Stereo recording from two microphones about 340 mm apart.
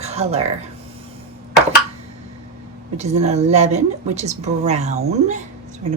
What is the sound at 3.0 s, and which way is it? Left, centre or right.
A woman's voice, centre.